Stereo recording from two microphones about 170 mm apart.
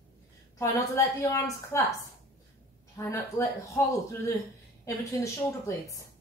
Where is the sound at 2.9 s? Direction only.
15° left (ahead or behind).